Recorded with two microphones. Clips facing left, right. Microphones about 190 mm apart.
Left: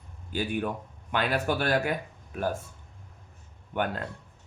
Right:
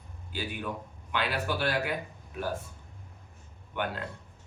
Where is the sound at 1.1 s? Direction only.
50° left (ahead or behind).